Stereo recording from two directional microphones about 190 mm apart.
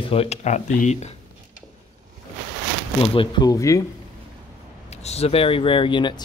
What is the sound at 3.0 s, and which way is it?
Speech, 25° left (ahead or behind).